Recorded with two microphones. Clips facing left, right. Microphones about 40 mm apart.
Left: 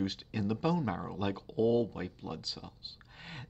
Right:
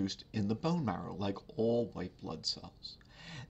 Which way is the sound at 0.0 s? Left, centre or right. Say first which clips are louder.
Left 2 dB; left.